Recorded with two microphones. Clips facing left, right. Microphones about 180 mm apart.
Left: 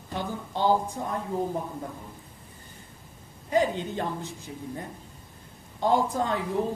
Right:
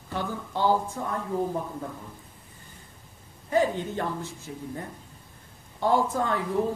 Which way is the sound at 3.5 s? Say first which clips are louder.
Even; 15° left (ahead or behind).